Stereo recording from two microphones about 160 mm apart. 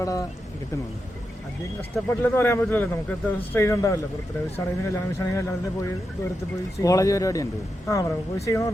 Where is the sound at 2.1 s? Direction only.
15° left (ahead or behind).